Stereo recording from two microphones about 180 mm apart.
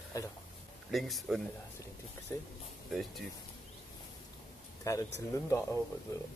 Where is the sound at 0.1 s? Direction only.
20° left (ahead or behind).